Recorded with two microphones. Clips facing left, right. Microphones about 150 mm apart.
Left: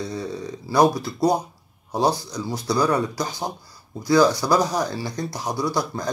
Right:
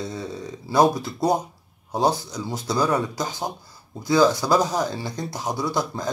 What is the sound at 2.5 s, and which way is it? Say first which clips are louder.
Speech: left 1 dB; 25° right (ahead or behind).